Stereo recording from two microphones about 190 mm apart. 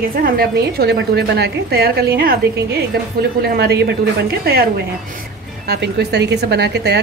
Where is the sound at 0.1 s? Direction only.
50° right (ahead or behind).